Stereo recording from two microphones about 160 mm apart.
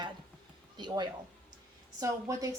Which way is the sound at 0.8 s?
30° right (ahead or behind).